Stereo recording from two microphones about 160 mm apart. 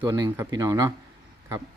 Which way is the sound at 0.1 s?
20° right (ahead or behind).